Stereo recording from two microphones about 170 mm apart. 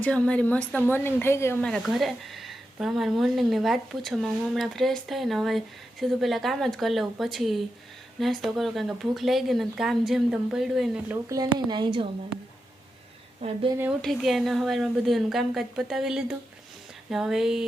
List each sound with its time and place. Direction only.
0.0 s a woman's voice: 5° left (ahead or behind)
1.6 s speech: centre (ahead or behind)
11.3 s a woman's voice: 25° right (ahead or behind)
13.4 s speech: 35° right (ahead or behind)
14.0 s speech: centre (ahead or behind)